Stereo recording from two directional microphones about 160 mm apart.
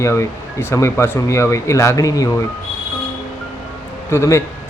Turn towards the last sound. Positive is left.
turn(degrees=15)  # may be behind; listen again after turning